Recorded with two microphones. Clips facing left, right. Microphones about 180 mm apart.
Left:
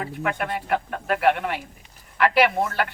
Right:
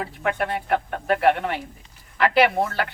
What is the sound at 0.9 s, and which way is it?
Speech, 30° right (ahead or behind).